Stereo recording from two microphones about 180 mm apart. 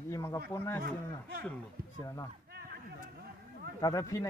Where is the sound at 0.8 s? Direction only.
60° right (ahead or behind).